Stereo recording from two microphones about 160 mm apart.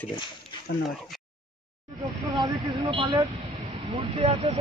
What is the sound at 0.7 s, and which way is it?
Speech, 80° left.